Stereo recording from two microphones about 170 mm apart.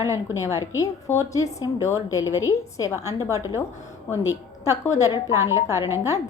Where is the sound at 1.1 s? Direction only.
20° left (ahead or behind).